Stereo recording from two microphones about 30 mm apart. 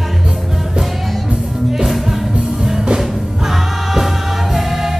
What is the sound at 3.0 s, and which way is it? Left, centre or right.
Music, centre.